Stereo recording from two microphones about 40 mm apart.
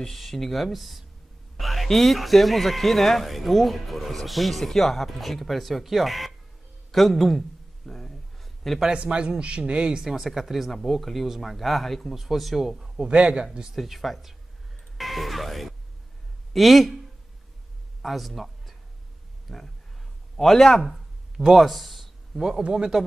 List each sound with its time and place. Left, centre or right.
0.0 s speech: centre
6.9 s a sound: centre
8.9 s speech: right
10.0 s speech: centre
13.0 s speech: right
13.7 s speech: centre
18.0 s a man's voice: centre
20.9 s a sound: centre
22.6 s speech: right